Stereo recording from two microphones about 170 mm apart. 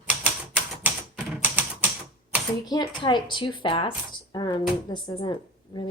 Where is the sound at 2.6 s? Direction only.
25° left (ahead or behind).